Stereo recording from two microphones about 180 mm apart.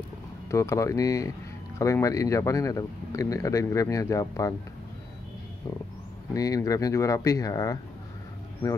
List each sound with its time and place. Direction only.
0.5 s speech: 15° left (ahead or behind)
6.3 s speech: 20° left (ahead or behind)